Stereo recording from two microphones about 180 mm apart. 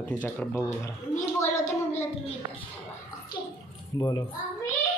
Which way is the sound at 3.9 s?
20° left (ahead or behind).